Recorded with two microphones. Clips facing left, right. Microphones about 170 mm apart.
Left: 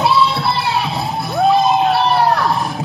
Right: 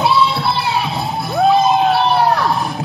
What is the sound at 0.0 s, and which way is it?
Music, centre (ahead or behind).